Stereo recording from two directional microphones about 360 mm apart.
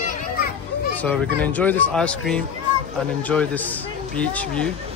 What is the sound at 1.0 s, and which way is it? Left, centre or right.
Speech, centre.